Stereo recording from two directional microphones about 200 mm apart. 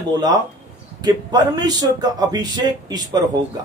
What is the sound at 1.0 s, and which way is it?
A man's voice, 20° right (ahead or behind).